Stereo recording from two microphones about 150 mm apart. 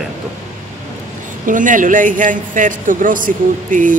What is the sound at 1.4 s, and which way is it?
A man's voice, 60° right (ahead or behind).